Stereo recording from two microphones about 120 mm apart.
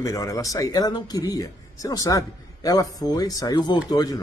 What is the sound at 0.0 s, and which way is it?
A man's voice, 30° left (ahead or behind).